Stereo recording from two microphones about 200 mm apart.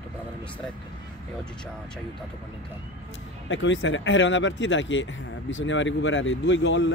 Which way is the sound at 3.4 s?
65° left (ahead or behind).